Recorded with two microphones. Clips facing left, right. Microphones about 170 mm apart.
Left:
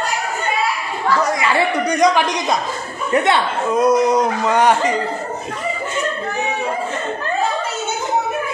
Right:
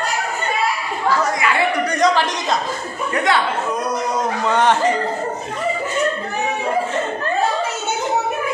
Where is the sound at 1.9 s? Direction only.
15° left (ahead or behind).